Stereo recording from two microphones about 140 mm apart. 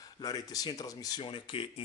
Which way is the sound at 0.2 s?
25° left (ahead or behind).